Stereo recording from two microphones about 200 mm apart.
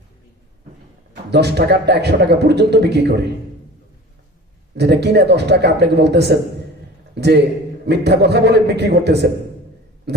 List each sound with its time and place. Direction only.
1.3 s a man's voice: 55° right (ahead or behind)
4.7 s a man's voice: 55° right (ahead or behind)
10.1 s a sound: 55° right (ahead or behind)